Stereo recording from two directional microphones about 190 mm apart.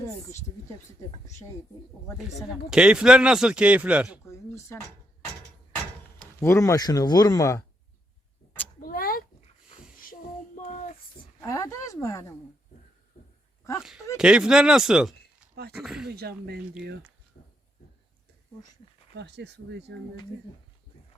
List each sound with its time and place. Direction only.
2.6 s speech: 5° right (ahead or behind)
4.3 s a sound: 15° left (ahead or behind)
6.1 s speech: 15° left (ahead or behind)
8.8 s cat: 50° left (ahead or behind)
10.0 s child singing: 45° left (ahead or behind)
11.3 s speech: 15° left (ahead or behind)
13.7 s speech: centre (ahead or behind)
16.0 s speech: 55° right (ahead or behind)
19.1 s speech: 65° right (ahead or behind)